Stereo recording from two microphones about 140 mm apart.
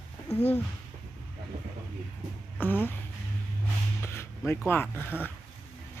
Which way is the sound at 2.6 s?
15° left (ahead or behind).